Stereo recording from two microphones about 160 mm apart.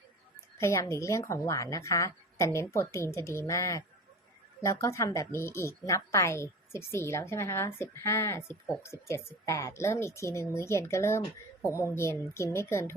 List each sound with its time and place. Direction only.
0.3 s a woman's voice: 20° left (ahead or behind)